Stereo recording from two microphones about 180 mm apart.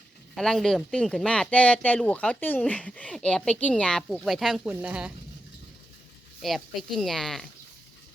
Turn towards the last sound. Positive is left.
turn(degrees=0)  # may be behind; listen again after turning